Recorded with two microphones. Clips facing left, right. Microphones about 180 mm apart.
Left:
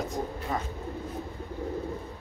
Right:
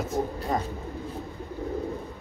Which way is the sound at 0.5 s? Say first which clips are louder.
Right 4 dB; 40° right (ahead or behind).